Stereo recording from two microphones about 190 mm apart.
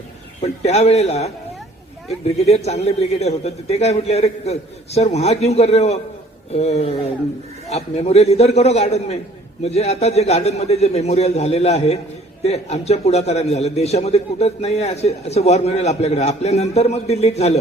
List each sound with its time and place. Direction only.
0.4 s a man's voice: 35° left (ahead or behind)